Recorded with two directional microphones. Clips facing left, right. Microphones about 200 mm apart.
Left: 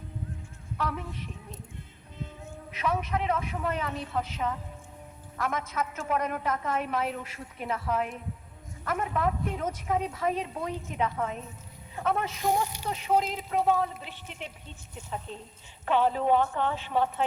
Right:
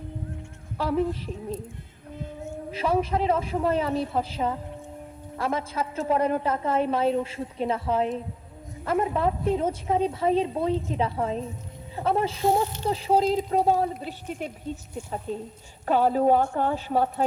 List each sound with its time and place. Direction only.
0.8 s a man's voice: 30° right (ahead or behind)
2.6 s a man's voice: 30° right (ahead or behind)
15.3 s a woman's voice: 10° right (ahead or behind)
15.9 s a man's voice: 40° right (ahead or behind)